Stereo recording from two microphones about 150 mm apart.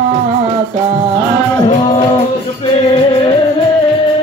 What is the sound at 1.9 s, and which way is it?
Music, 40° left (ahead or behind).